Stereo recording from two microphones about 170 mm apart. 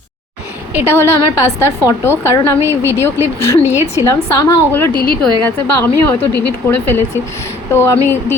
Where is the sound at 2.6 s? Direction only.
15° right (ahead or behind).